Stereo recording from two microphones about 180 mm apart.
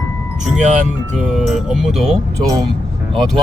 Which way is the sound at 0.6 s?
45° right (ahead or behind).